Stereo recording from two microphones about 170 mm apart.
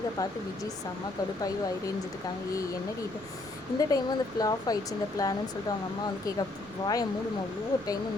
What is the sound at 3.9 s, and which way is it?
Speech, 20° left (ahead or behind).